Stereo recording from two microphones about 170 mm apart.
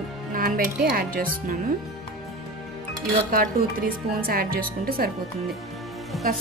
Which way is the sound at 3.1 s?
55° right (ahead or behind).